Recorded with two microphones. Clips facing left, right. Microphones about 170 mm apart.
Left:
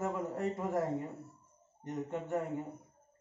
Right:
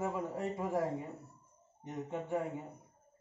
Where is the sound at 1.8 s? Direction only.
5° right (ahead or behind).